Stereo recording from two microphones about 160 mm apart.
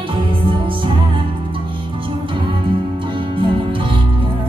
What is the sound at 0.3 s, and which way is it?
Music, 30° right (ahead or behind).